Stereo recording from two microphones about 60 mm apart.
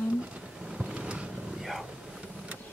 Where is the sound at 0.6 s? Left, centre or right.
Centre.